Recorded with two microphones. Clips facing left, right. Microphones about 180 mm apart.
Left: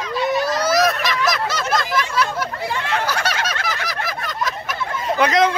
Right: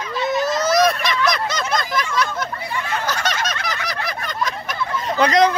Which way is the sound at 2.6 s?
85° left.